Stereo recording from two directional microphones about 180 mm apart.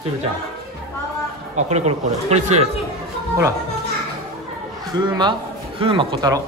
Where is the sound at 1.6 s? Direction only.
40° right (ahead or behind).